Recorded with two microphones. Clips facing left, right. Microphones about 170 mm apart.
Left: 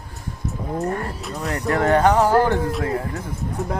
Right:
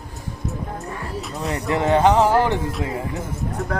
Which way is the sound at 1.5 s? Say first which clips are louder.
Left 1 dB; 20° right (ahead or behind).